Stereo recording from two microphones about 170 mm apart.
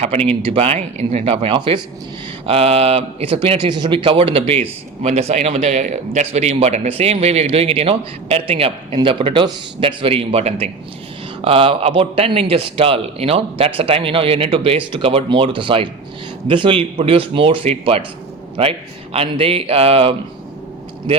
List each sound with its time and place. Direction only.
0.4 s a man's voice: 35° right (ahead or behind)
19.1 s a man's voice: 35° right (ahead or behind)